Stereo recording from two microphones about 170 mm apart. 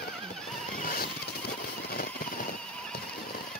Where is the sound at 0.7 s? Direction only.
55° left (ahead or behind).